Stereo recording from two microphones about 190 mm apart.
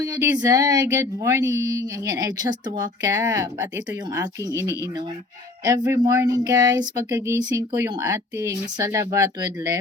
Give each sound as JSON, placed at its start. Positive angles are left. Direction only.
{"t": 0.0, "sound": "speech", "side_deg": -20}